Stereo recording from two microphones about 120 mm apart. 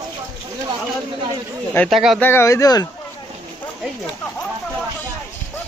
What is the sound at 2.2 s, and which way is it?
Speech, 20° left (ahead or behind).